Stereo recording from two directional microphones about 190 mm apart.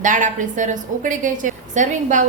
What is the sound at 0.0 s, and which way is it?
A woman's voice, 40° right (ahead or behind).